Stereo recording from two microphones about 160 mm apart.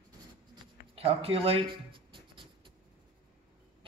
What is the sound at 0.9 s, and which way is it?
Writing, 35° right (ahead or behind).